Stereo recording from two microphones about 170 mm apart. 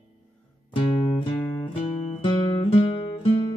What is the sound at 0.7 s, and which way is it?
Music, 30° left (ahead or behind).